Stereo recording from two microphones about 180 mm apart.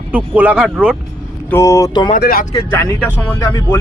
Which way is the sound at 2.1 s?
50° left (ahead or behind).